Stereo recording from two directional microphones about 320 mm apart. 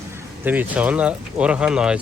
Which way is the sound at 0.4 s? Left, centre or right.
Centre.